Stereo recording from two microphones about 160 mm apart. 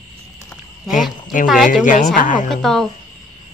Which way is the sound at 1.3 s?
55° left (ahead or behind).